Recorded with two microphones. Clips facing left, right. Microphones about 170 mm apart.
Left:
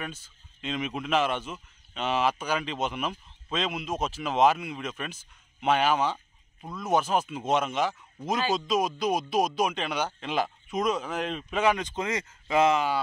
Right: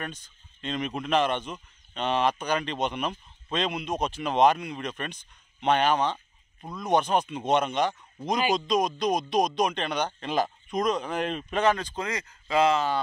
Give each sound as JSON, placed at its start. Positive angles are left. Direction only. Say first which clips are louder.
{"t": 0.0, "sound": "speech", "louder": "right 1 dB", "side_deg": 5}
{"t": 11.6, "sound": "speech", "louder": "even", "side_deg": 15}